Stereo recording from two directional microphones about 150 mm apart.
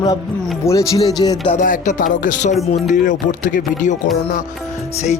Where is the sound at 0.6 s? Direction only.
20° left (ahead or behind).